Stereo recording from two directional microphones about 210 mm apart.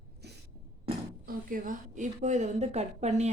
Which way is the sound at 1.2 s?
40° right (ahead or behind).